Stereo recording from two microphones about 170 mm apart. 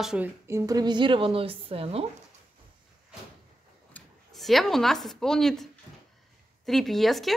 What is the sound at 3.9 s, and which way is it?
A woman's voice, centre (ahead or behind).